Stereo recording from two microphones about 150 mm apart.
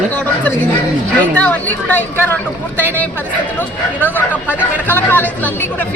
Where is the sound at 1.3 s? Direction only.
10° left (ahead or behind).